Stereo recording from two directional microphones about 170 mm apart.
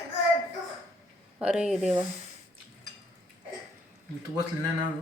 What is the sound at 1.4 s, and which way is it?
Speech, 5° right (ahead or behind).